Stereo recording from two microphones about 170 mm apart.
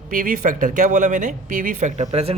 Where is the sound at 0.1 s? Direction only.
55° right (ahead or behind).